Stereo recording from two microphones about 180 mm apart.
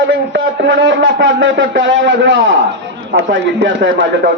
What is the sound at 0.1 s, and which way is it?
A man's voice, 85° right.